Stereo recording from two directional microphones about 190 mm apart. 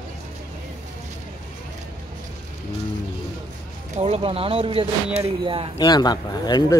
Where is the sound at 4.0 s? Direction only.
30° right (ahead or behind).